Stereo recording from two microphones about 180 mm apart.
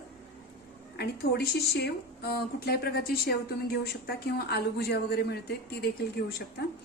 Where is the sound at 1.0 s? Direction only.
60° left (ahead or behind).